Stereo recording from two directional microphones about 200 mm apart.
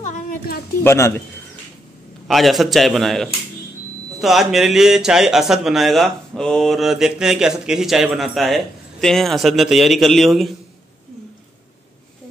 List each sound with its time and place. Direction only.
0.0 s a sound: 40° left (ahead or behind)
0.8 s a man's voice: 15° left (ahead or behind)
2.2 s a man's voice: centre (ahead or behind)